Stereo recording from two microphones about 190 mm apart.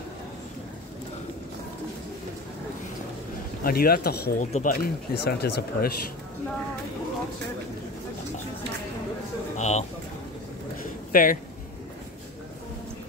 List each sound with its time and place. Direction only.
3.6 s speech: 50° left (ahead or behind)
4.4 s speech: 40° left (ahead or behind)
9.6 s a sound: 35° left (ahead or behind)
11.1 s speech: 45° left (ahead or behind)